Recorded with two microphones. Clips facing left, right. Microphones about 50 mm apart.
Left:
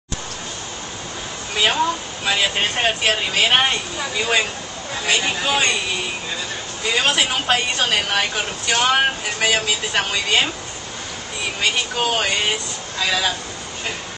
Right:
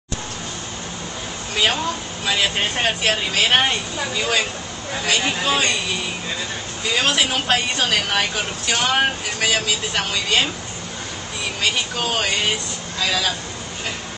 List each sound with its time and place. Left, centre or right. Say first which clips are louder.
1.6 s a woman's voice: left 2 dB; centre
5.5 s speech: left 1 dB; centre
6.9 s a woman's voice: left 1 dB; centre
11.6 s a woman's voice: left 2 dB; centre